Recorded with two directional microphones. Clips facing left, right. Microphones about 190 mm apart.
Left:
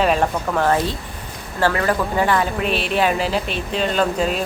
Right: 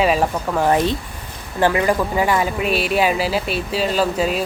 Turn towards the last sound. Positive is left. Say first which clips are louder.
# right 1 dB
turn(degrees=-5)  # may be behind; listen again after turning